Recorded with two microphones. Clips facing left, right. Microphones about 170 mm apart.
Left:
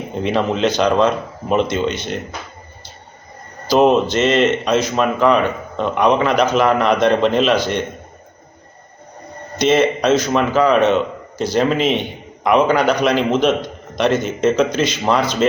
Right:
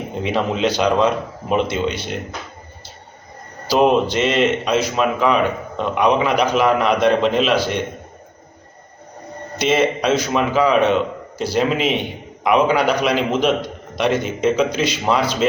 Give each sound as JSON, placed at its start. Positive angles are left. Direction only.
{"t": 0.2, "sound": "a man's voice", "side_deg": -5}
{"t": 3.7, "sound": "a man's voice", "side_deg": -10}
{"t": 9.6, "sound": "a man's voice", "side_deg": -10}